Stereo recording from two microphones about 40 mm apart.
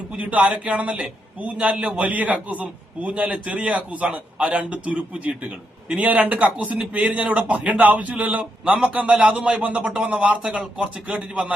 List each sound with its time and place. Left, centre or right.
0.2 s a man's voice: right